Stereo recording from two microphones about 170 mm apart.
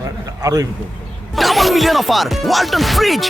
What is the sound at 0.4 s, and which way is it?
Speech, 20° right (ahead or behind).